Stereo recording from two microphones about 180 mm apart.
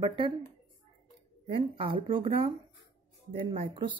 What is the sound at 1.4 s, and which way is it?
Speech, 30° right (ahead or behind).